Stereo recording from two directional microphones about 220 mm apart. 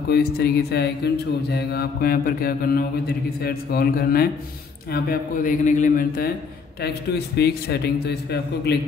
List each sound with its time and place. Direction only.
0.1 s mantra: 45° left (ahead or behind)
4.9 s a man's voice: 35° left (ahead or behind)
6.8 s mantra: 45° left (ahead or behind)